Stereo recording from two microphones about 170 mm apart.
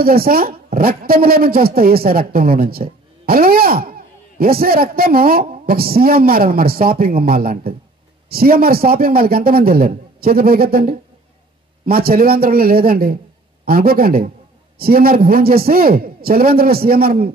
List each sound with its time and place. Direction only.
0.0 s speech: 60° right (ahead or behind)